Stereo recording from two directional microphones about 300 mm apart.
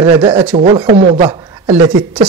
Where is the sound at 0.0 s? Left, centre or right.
Centre.